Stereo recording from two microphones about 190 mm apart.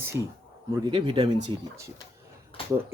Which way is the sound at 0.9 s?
25° right (ahead or behind).